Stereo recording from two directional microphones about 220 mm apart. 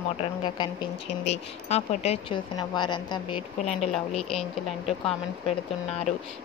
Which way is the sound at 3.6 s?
30° left (ahead or behind).